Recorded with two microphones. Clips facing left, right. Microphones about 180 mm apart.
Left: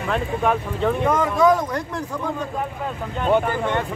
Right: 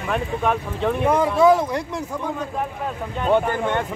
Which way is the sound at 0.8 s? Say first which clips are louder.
Right 1 dB; 10° right (ahead or behind).